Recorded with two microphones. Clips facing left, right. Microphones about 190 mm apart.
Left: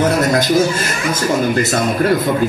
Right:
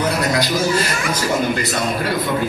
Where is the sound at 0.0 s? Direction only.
45° left (ahead or behind).